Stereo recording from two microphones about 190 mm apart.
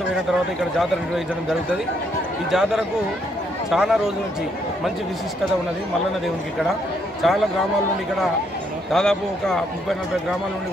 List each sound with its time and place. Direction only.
0.1 s a man's voice: centre (ahead or behind)
7.2 s a man's voice: centre (ahead or behind)
8.9 s a man's voice: 5° left (ahead or behind)